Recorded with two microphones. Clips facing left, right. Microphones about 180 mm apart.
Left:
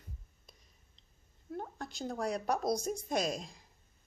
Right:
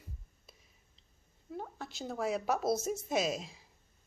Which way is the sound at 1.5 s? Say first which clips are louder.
Left 1 dB; centre (ahead or behind).